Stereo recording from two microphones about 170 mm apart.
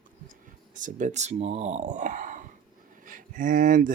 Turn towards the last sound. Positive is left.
turn(degrees=-50)  # may be behind; listen again after turning